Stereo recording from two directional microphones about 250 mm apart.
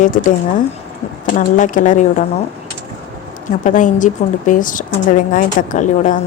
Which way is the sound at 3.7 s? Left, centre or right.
Left.